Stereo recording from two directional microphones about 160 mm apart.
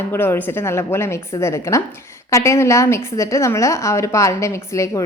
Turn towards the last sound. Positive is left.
turn(degrees=20)  # may be behind; listen again after turning